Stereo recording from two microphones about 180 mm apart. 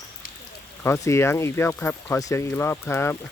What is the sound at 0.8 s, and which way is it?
Speech, 15° left (ahead or behind).